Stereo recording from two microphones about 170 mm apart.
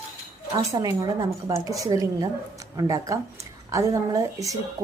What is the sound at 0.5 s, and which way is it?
A woman's voice, 20° right (ahead or behind).